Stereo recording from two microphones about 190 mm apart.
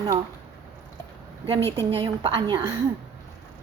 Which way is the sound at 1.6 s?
15° left (ahead or behind).